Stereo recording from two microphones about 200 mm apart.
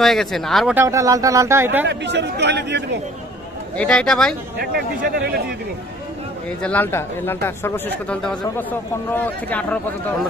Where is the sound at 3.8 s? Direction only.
5° left (ahead or behind).